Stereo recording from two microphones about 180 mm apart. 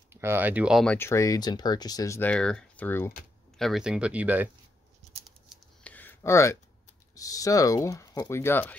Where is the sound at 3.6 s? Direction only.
5° right (ahead or behind).